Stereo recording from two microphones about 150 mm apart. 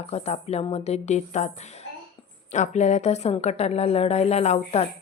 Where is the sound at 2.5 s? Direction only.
50° left (ahead or behind).